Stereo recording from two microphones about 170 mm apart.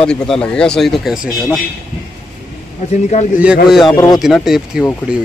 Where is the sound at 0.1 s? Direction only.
5° left (ahead or behind).